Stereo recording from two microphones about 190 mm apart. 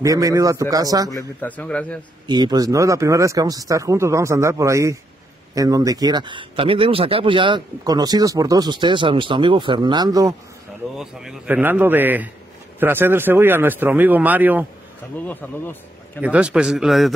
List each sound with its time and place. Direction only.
0.0 s speech: 20° right (ahead or behind)
1.1 s a man's voice: 10° left (ahead or behind)
2.2 s speech: 20° right (ahead or behind)
11.0 s speech: centre (ahead or behind)
15.2 s a man's voice: 10° left (ahead or behind)
16.2 s a man's voice: 5° right (ahead or behind)